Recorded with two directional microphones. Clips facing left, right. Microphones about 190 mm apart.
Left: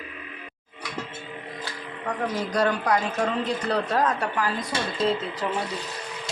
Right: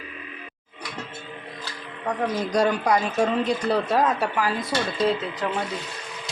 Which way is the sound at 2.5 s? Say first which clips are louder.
Right 2 dB; 10° right (ahead or behind).